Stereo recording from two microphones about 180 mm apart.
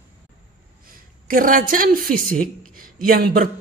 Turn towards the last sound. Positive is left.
turn(degrees=-55)  # may be behind; listen again after turning